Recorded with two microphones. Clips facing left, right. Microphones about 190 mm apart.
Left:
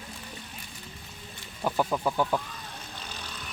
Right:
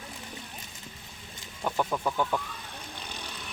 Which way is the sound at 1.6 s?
5° left (ahead or behind).